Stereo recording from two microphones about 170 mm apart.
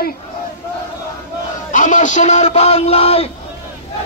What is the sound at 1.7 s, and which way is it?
Speech, 50° left (ahead or behind).